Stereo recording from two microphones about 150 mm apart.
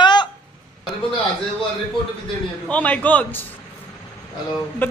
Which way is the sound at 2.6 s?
10° left (ahead or behind).